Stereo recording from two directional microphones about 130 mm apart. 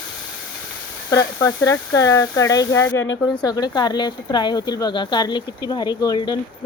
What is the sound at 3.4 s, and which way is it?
Speech, 30° left (ahead or behind).